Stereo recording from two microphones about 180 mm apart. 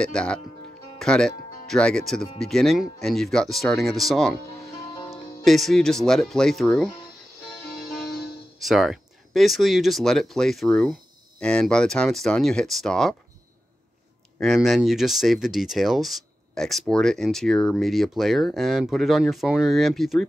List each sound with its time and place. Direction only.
0.0 s speech: 5° left (ahead or behind)
7.8 s music: centre (ahead or behind)
8.5 s speech: centre (ahead or behind)
14.4 s speech: centre (ahead or behind)